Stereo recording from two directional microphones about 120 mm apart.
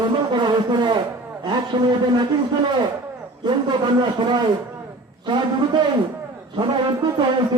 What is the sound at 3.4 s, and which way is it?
A man's voice, 40° right (ahead or behind).